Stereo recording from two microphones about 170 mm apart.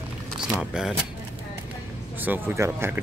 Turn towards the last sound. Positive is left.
turn(degrees=-15)  # may be behind; listen again after turning